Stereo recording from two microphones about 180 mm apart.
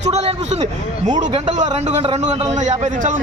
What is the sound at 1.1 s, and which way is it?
A man's voice, 40° right (ahead or behind).